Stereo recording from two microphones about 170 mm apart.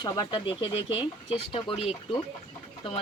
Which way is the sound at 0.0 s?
25° left (ahead or behind).